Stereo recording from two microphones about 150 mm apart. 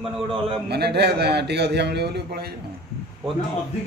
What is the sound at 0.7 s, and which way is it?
Speech, 90° right.